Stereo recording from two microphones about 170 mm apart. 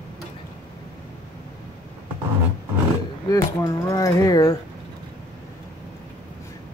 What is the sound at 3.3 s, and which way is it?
Speech, 20° left (ahead or behind).